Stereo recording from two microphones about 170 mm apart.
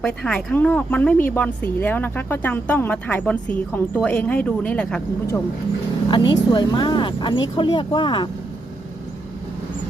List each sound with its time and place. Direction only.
0.0 s speech: 5° left (ahead or behind)
6.1 s speech: 25° left (ahead or behind)